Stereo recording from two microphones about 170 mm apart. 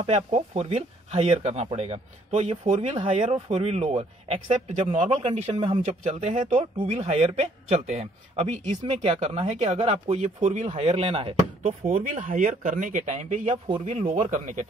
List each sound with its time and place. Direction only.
0.0 s speech: 40° right (ahead or behind)
12.3 s speech: 50° right (ahead or behind)